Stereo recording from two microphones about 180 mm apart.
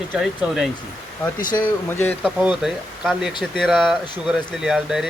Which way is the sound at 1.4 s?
50° left (ahead or behind).